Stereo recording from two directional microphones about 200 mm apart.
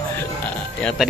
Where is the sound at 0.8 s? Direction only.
5° left (ahead or behind).